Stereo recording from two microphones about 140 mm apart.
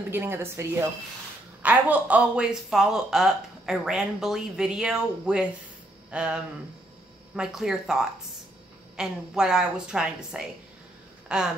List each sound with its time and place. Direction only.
0.1 s speech: 15° right (ahead or behind)